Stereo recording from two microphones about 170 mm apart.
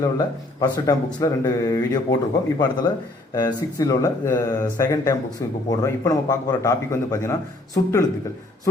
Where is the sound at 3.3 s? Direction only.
20° left (ahead or behind).